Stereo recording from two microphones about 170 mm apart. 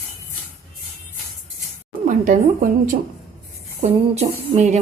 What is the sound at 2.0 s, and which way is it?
Speech, 50° right (ahead or behind).